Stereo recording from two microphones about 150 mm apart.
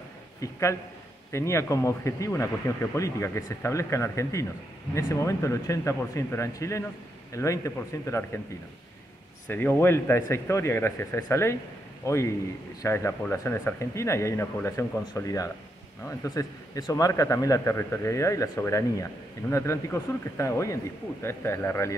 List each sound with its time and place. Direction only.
0.4 s speech: 20° left (ahead or behind)
9.5 s speech: 15° left (ahead or behind)